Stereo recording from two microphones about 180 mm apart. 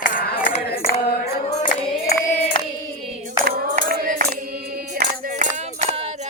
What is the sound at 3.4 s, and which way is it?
Music, 55° right (ahead or behind).